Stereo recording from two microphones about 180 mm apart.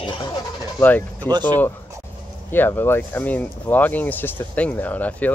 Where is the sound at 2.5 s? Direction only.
10° left (ahead or behind).